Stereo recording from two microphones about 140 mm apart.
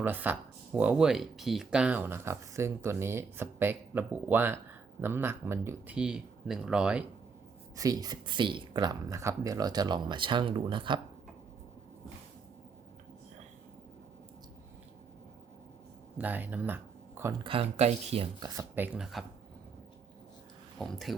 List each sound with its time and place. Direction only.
0.0 s speech: 15° right (ahead or behind)
6.0 s speech: 5° right (ahead or behind)
7.8 s speech: 25° right (ahead or behind)
16.1 s speech: 10° right (ahead or behind)
17.4 s speech: 40° right (ahead or behind)
18.3 s speech: 30° right (ahead or behind)
18.7 s speech: 10° right (ahead or behind)
20.7 s speech: centre (ahead or behind)